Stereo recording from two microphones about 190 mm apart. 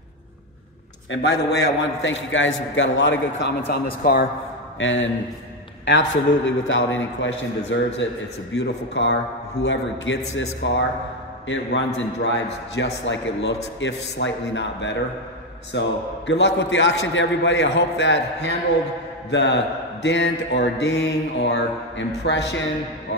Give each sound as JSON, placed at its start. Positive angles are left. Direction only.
{"t": 1.1, "sound": "a man's voice", "side_deg": 80}
{"t": 3.7, "sound": "speech", "side_deg": 50}
{"t": 4.7, "sound": "a man's voice", "side_deg": 85}
{"t": 5.9, "sound": "a man's voice", "side_deg": 75}
{"t": 8.5, "sound": "mantra", "side_deg": 75}
{"t": 9.6, "sound": "a man's voice", "side_deg": 85}
{"t": 10.6, "sound": "mantra", "side_deg": 75}